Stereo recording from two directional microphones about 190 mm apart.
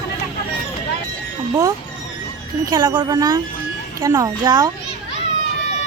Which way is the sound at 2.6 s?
20° right (ahead or behind).